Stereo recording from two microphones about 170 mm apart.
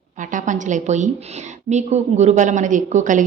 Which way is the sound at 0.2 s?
50° right (ahead or behind).